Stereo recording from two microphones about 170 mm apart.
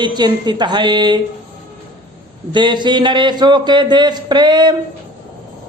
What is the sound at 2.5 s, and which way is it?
A woman's voice, 25° right (ahead or behind).